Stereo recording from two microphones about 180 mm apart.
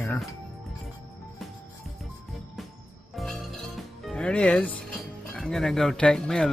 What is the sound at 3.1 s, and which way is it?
Speech, centre (ahead or behind).